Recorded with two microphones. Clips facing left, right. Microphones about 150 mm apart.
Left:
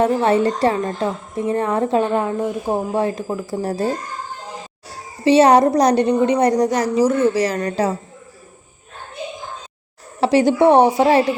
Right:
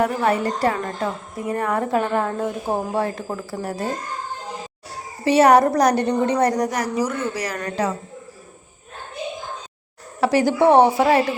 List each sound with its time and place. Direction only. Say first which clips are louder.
0.0 s a woman's voice: left 4 dB; 25° left (ahead or behind)
3.5 s speech: left 6 dB; 30° left (ahead or behind)
5.2 s a woman's voice: left 2 dB; 25° left (ahead or behind)
10.2 s a woman's voice: left 3 dB; 25° left (ahead or behind)